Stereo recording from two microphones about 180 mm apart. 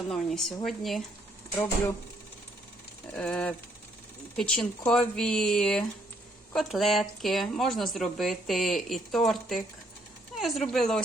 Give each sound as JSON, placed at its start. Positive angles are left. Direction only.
{"t": 0.1, "sound": "speech", "side_deg": 0}
{"t": 3.1, "sound": "speech", "side_deg": 5}
{"t": 10.3, "sound": "a sound", "side_deg": 0}
{"t": 10.7, "sound": "speech", "side_deg": 5}